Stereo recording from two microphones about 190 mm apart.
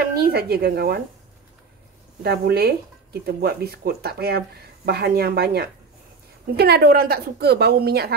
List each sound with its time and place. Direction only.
0.0 s speech: 55° right (ahead or behind)
2.2 s speech: 55° right (ahead or behind)